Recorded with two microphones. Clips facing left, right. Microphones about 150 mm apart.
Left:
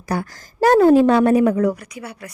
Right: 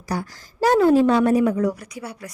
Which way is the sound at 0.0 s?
55° left (ahead or behind).